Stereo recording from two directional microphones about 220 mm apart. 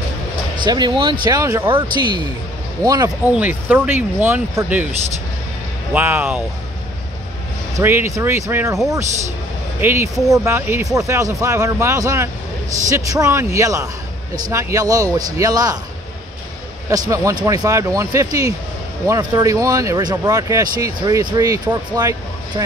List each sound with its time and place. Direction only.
0.7 s speech: 20° right (ahead or behind)
5.9 s speech: 10° right (ahead or behind)
7.7 s speech: 10° right (ahead or behind)
9.8 s speech: 10° right (ahead or behind)
16.9 s speech: 15° right (ahead or behind)